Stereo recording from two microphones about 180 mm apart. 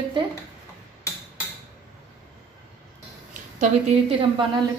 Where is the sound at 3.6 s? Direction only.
35° right (ahead or behind).